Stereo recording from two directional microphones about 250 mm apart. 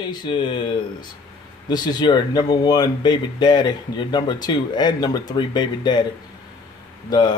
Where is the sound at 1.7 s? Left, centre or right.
Centre.